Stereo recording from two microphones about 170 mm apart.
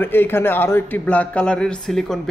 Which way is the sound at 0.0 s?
10° left (ahead or behind).